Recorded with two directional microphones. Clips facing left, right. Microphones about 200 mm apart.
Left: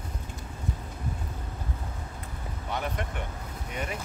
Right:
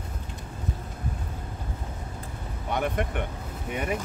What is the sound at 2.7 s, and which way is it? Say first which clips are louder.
Speech: right 6 dB; 55° right (ahead or behind).